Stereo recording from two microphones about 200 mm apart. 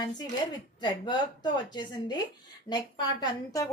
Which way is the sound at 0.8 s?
20° left (ahead or behind).